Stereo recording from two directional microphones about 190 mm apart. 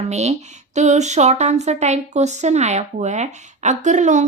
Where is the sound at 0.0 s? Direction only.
35° right (ahead or behind).